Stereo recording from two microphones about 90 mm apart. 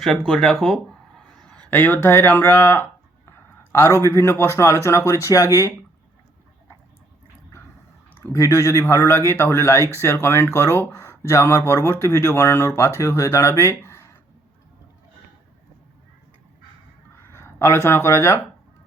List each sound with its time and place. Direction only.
0.3 s speech: 5° left (ahead or behind)
1.7 s speech: 20° left (ahead or behind); by 5.7 s 35° left (ahead or behind)
8.2 s speech: 30° left (ahead or behind)
17.2 s a sound: 30° left (ahead or behind)
17.8 s speech: 30° left (ahead or behind)